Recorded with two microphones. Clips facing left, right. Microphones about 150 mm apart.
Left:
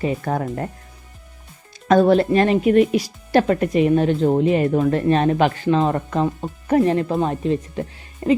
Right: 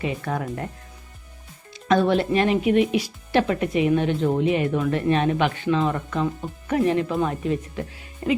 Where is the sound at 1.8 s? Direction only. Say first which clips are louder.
Left 5 dB; 40° left (ahead or behind).